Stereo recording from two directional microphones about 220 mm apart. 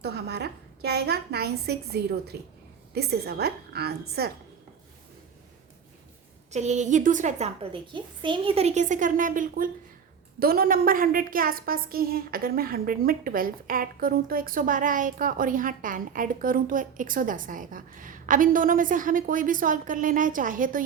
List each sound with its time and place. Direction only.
0.0 s a woman's voice: 50° right (ahead or behind)
6.5 s a woman's voice: 30° right (ahead or behind)